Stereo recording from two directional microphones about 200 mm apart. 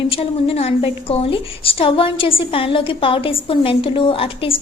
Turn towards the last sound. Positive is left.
turn(degrees=25)  # may be behind; listen again after turning